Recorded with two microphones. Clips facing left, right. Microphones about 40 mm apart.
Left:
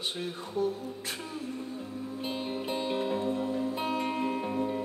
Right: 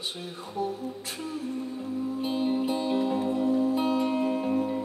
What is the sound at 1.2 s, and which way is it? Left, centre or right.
Music, centre.